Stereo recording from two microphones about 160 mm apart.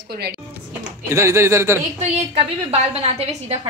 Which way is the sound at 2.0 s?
40° right (ahead or behind).